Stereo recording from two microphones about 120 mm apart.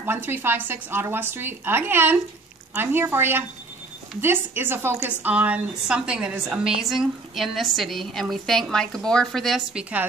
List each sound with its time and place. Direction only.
0.0 s a woman's voice: 15° right (ahead or behind); by 9.8 s centre (ahead or behind)